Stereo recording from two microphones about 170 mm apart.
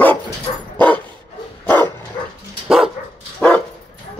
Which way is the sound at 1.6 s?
15° left (ahead or behind).